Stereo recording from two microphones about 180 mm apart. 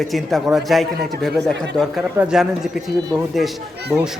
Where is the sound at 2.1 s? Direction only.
5° right (ahead or behind).